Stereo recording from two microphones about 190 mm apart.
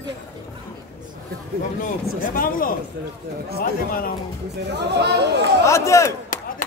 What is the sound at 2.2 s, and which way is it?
Speech, 45° left (ahead or behind).